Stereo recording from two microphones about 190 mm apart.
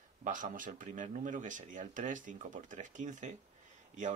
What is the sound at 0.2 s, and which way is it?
Speech, 45° right (ahead or behind).